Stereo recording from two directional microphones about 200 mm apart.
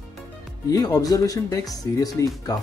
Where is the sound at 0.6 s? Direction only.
20° left (ahead or behind).